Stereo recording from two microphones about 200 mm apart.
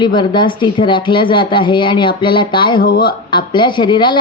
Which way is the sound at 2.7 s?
45° left (ahead or behind).